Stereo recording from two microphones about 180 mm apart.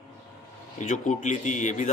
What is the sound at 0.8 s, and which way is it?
A man's voice, 45° left (ahead or behind).